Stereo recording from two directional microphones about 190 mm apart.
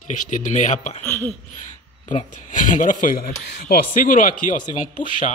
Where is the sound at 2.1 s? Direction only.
40° left (ahead or behind).